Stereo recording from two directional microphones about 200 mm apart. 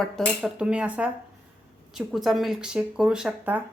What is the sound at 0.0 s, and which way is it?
A woman's voice, 5° right (ahead or behind).